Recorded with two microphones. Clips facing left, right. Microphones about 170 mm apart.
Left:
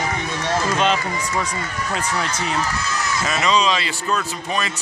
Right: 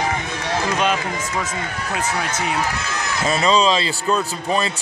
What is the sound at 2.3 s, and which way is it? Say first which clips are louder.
Speech: right 1 dB; 60° right (ahead or behind).